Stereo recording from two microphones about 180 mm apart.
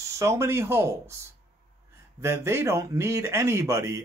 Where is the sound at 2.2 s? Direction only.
15° right (ahead or behind).